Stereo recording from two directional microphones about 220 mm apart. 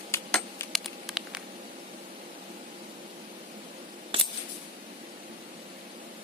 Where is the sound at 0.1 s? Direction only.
10° left (ahead or behind).